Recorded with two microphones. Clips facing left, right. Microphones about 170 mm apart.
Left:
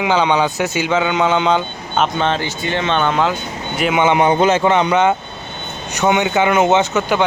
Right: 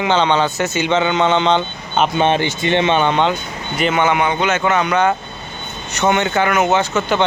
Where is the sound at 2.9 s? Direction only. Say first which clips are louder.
Right 1 dB; centre (ahead or behind).